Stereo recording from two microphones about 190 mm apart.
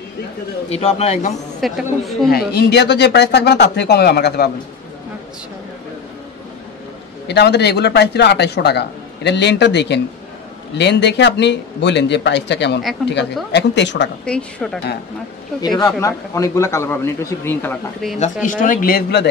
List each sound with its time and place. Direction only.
0.7 s speech: 35° left (ahead or behind)
1.6 s a woman's voice: centre (ahead or behind)
2.3 s a man's voice: 60° left (ahead or behind)
7.2 s a man's voice: 60° left (ahead or behind)
14.2 s a woman's voice: 5° left (ahead or behind)
15.8 s a man's voice: 15° left (ahead or behind)
18.2 s speech: 45° left (ahead or behind)